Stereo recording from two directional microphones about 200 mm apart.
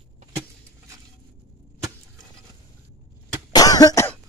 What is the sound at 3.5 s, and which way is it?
Cough, 20° left (ahead or behind).